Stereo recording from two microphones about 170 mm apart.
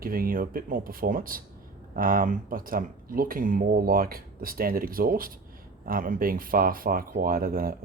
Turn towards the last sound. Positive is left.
turn(degrees=-55)  # may be behind; listen again after turning